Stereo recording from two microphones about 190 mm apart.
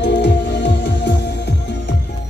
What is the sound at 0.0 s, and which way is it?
Music, 65° left (ahead or behind).